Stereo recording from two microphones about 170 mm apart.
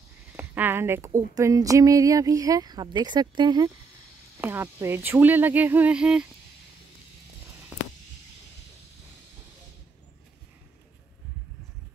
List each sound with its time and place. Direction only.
0.3 s speech: 10° right (ahead or behind)
4.4 s speech: 15° right (ahead or behind)